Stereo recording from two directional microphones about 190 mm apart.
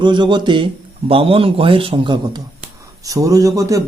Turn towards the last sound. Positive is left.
turn(degrees=-15)  # may be behind; listen again after turning